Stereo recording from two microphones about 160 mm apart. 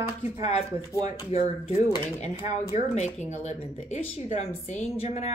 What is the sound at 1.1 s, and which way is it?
Speech, 40° left (ahead or behind).